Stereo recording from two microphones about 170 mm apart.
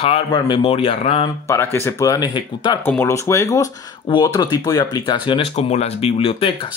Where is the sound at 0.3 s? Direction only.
30° left (ahead or behind).